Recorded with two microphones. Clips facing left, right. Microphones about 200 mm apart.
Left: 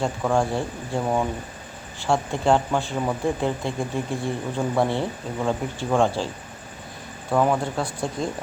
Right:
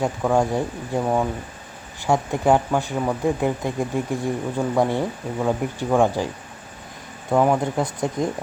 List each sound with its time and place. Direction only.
0.0 s speech: 15° right (ahead or behind)